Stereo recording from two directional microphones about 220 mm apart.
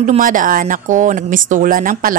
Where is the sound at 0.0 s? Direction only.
35° right (ahead or behind).